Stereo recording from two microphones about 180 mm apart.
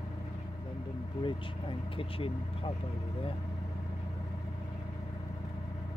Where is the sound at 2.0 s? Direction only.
30° left (ahead or behind).